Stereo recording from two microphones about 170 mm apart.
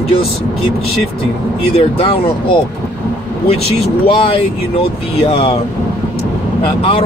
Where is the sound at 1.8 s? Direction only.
35° left (ahead or behind).